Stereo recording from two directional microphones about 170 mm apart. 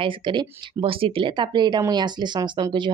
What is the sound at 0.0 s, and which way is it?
Speech, 30° right (ahead or behind).